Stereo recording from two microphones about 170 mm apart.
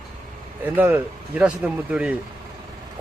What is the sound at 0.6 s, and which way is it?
Speech, 10° right (ahead or behind).